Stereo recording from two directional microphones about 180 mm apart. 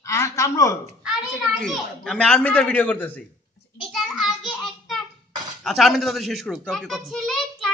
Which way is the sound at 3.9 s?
Centre (ahead or behind).